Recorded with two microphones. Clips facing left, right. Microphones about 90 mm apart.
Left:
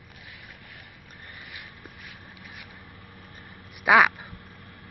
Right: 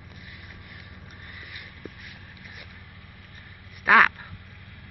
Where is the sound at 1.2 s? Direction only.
35° left (ahead or behind).